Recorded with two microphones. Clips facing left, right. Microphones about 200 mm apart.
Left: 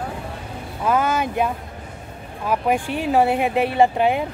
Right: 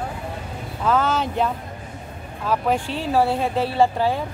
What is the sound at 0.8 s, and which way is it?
Speech, 10° left (ahead or behind).